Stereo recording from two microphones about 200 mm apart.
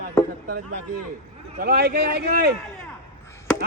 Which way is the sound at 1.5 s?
50° right (ahead or behind).